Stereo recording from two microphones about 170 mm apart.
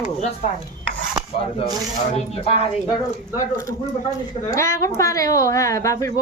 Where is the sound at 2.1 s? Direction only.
35° left (ahead or behind).